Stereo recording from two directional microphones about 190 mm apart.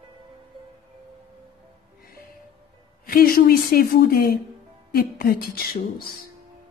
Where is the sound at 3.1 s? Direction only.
50° left (ahead or behind).